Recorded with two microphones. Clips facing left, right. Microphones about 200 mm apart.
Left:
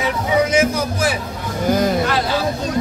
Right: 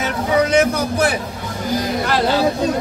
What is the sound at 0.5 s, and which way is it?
Speech, 60° right (ahead or behind).